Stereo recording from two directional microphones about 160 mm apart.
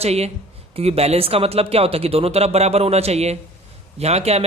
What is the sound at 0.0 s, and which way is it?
Speech, 40° right (ahead or behind).